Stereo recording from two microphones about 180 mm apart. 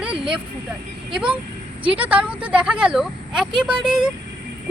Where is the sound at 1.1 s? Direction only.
5° right (ahead or behind).